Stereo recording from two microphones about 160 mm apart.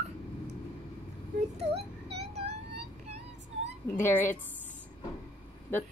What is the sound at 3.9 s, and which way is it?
Speech, 10° left (ahead or behind).